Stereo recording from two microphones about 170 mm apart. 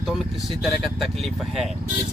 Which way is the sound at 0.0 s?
Centre (ahead or behind).